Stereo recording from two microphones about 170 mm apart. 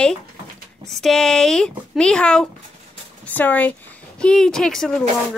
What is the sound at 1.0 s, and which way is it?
Speech, 5° left (ahead or behind).